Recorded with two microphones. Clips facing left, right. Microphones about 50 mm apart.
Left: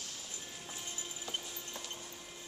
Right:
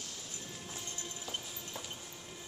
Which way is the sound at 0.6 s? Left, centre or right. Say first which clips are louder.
Even; centre.